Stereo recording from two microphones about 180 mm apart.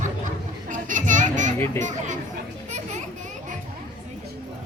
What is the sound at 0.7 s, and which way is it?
Children playing, 45° right (ahead or behind).